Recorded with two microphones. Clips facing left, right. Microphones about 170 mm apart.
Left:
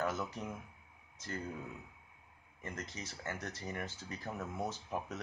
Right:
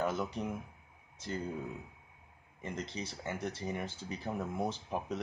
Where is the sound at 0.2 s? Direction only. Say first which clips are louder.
Right 5 dB; 15° right (ahead or behind).